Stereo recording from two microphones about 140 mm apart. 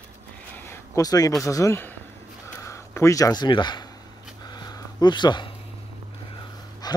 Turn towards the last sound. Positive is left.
turn(degrees=30)  # may be behind; listen again after turning